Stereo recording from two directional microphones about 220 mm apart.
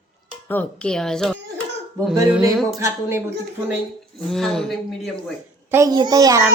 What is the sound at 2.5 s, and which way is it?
Speech, centre (ahead or behind).